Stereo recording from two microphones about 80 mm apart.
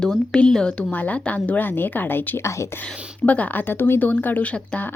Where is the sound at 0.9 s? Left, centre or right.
Centre.